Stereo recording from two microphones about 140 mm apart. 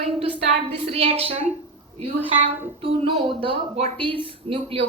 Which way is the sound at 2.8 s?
40° right (ahead or behind).